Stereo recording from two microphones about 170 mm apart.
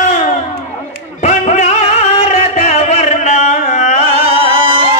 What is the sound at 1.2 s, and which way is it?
Music, 45° left (ahead or behind).